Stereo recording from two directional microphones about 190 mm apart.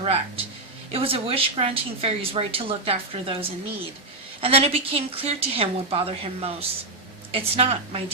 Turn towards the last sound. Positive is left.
turn(degrees=-30)  # may be behind; listen again after turning